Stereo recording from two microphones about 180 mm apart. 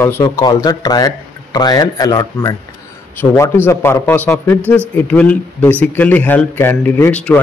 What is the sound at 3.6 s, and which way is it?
A man's voice, 10° left (ahead or behind).